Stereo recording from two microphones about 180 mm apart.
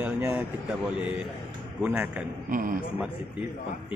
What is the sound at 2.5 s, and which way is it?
Speech, 50° right (ahead or behind).